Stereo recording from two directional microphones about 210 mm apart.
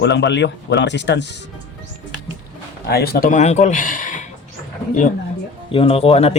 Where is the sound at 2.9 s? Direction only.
50° left (ahead or behind).